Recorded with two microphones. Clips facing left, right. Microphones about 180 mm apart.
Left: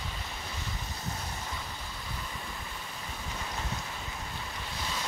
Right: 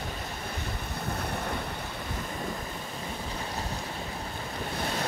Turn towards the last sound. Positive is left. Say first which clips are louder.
# right 6 dB
turn(degrees=-55)  # may be behind; listen again after turning